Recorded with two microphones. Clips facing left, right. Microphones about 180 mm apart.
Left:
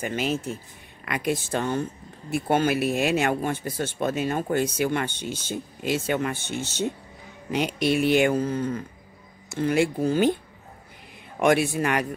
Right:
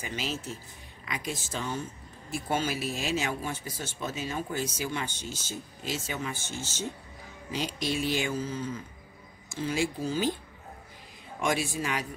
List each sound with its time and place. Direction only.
0.0 s speech: 55° left (ahead or behind)
11.3 s speech: 60° left (ahead or behind)